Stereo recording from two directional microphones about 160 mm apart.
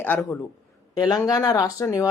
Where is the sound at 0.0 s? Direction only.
15° left (ahead or behind).